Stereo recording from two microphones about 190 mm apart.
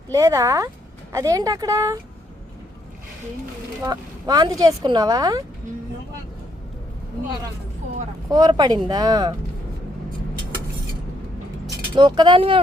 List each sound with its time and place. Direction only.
0.1 s speech: 15° right (ahead or behind)
3.8 s speech: 20° right (ahead or behind)
8.3 s speech: 20° right (ahead or behind)
11.9 s speech: 25° right (ahead or behind)